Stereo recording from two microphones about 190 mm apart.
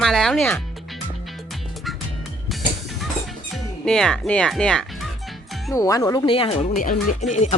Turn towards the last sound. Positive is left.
turn(degrees=45)  # may be behind; listen again after turning